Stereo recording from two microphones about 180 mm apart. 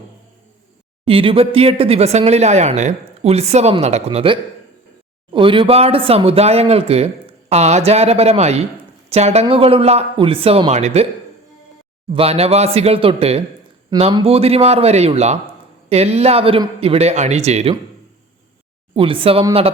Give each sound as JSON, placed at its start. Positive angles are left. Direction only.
{"t": 1.0, "sound": "speech", "side_deg": -30}
{"t": 12.1, "sound": "speech", "side_deg": -35}
{"t": 18.9, "sound": "speech", "side_deg": -30}